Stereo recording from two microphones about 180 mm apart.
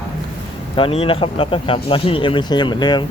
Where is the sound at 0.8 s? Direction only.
30° left (ahead or behind).